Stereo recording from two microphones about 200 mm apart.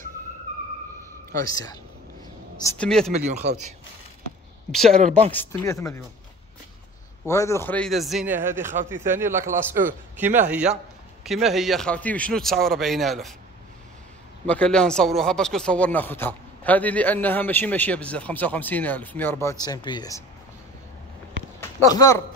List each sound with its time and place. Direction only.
1.5 s a man's voice: 15° left (ahead or behind)
3.1 s speech: 35° right (ahead or behind)
4.6 s a man's voice: centre (ahead or behind)
7.2 s a man's voice: 15° left (ahead or behind); by 9.5 s 10° right (ahead or behind)
10.5 s a man's voice: 5° right (ahead or behind)
14.4 s speech: 5° left (ahead or behind)
21.5 s speech: 15° left (ahead or behind)